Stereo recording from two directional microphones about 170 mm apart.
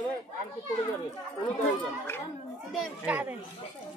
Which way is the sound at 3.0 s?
10° right (ahead or behind).